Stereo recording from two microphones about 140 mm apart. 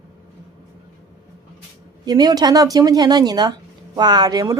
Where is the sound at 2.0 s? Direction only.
30° right (ahead or behind).